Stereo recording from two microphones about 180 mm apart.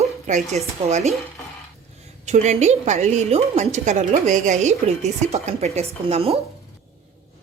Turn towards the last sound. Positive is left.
turn(degrees=-35)  # may be behind; listen again after turning